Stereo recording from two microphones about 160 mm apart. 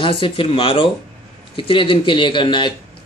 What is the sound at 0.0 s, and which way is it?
Speech, 35° left (ahead or behind).